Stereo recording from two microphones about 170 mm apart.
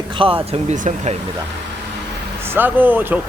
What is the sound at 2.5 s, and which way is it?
Speech, 10° right (ahead or behind).